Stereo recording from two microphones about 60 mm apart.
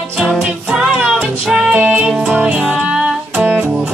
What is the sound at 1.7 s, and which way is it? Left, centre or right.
Music, right.